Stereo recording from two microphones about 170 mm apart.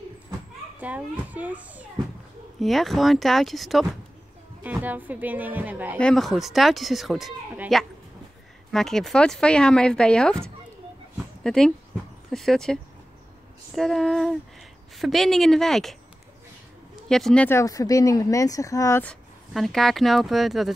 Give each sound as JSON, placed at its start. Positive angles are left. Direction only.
{"t": 0.7, "sound": "a woman's voice", "side_deg": -10}
{"t": 5.9, "sound": "speech", "side_deg": 5}
{"t": 8.7, "sound": "speech", "side_deg": 0}
{"t": 11.4, "sound": "speech", "side_deg": 5}
{"t": 13.7, "sound": "speech", "side_deg": 0}
{"t": 19.5, "sound": "speech", "side_deg": 0}